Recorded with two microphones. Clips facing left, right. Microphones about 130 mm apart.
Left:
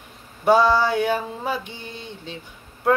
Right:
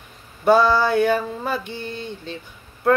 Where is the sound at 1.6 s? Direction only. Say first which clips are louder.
Right 6 dB; 55° right (ahead or behind).